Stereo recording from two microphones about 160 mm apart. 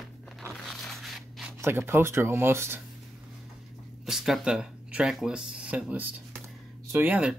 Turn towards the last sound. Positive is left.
turn(degrees=-10)  # may be behind; listen again after turning